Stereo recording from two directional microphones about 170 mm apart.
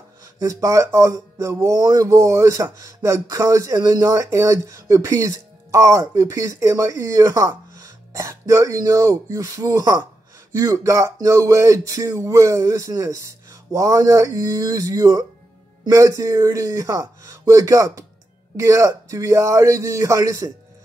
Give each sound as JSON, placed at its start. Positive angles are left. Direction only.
{"t": 0.2, "sound": "speech", "side_deg": -20}